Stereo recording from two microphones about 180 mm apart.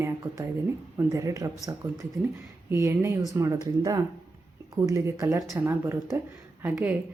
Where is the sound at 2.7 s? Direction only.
15° right (ahead or behind).